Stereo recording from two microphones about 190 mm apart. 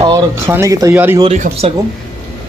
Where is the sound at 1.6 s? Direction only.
35° right (ahead or behind).